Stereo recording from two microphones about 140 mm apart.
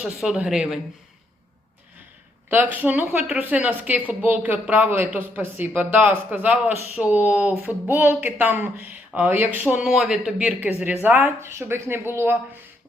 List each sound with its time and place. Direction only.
0.0 s speech: 5° right (ahead or behind)
2.5 s speech: 10° right (ahead or behind)